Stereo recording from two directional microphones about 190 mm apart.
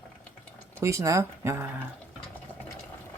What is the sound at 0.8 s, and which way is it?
Speech, 15° right (ahead or behind).